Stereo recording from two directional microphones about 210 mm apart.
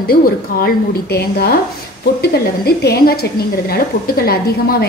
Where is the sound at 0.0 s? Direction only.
45° left (ahead or behind).